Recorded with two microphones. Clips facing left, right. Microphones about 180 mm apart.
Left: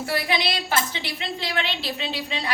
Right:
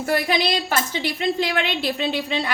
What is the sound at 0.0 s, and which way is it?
A woman's voice, 45° right (ahead or behind).